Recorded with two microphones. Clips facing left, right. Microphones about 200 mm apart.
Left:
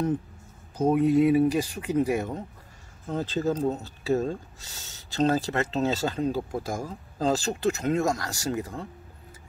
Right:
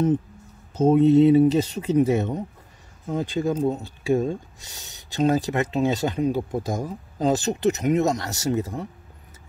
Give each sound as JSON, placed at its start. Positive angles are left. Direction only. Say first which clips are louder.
{"t": 0.7, "sound": "speech", "louder": "right 5 dB", "side_deg": -25}